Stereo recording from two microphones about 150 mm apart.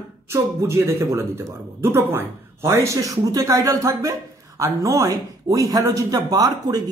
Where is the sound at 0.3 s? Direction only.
15° right (ahead or behind).